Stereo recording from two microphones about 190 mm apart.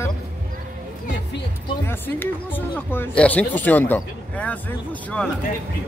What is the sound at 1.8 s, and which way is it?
Speech, 10° left (ahead or behind).